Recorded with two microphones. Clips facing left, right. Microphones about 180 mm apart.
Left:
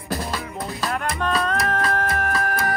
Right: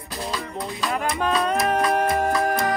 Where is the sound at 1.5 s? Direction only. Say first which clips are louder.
Right 3 dB; 20° right (ahead or behind).